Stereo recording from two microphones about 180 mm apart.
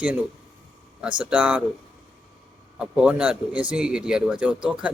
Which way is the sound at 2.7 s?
5° right (ahead or behind).